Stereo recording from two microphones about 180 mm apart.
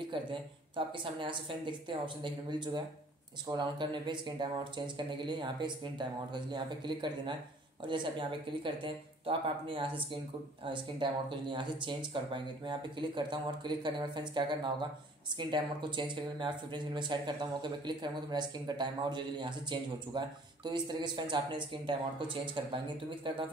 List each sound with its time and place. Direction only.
0.1 s speech: 30° right (ahead or behind)